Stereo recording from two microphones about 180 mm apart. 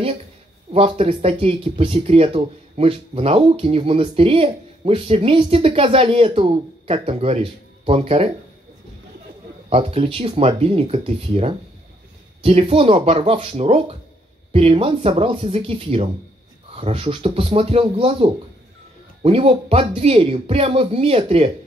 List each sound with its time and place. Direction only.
0.7 s speech: 30° right (ahead or behind)
9.7 s speech: 30° right (ahead or behind)